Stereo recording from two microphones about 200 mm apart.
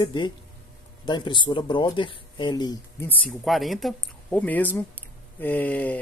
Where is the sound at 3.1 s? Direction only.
5° left (ahead or behind).